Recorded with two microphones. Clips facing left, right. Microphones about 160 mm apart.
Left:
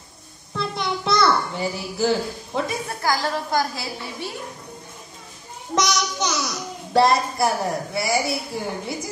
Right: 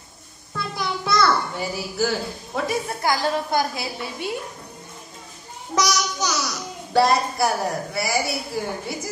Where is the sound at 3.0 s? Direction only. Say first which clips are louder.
Even; 20° right (ahead or behind).